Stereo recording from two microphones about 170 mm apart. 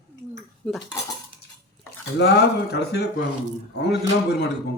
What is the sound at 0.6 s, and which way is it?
Speech, 5° left (ahead or behind).